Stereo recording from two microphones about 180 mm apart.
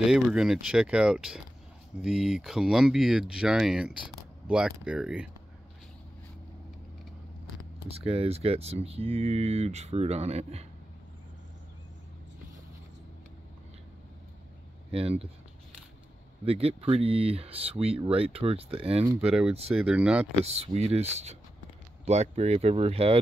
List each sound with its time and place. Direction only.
0.0 s speech: 5° right (ahead or behind)
8.0 s speech: 30° right (ahead or behind)
14.9 s speech: 35° right (ahead or behind)
16.4 s speech: 35° right (ahead or behind)
19.7 s speech: 5° right (ahead or behind)
20.4 s speech: 35° right (ahead or behind)